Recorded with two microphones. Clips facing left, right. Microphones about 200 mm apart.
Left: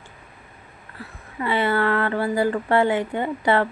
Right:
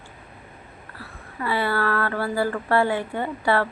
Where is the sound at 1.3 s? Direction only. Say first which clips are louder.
Left 3 dB; 20° left (ahead or behind).